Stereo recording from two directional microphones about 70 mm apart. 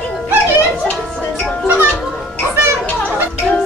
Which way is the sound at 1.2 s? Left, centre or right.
Left.